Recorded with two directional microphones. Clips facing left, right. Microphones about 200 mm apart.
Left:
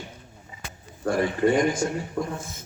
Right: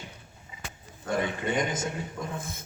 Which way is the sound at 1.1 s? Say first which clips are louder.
Left 6 dB; 20° right (ahead or behind).